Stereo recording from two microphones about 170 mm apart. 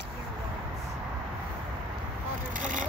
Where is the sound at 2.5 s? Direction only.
50° right (ahead or behind).